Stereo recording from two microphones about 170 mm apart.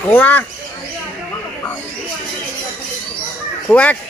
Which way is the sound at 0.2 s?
10° left (ahead or behind).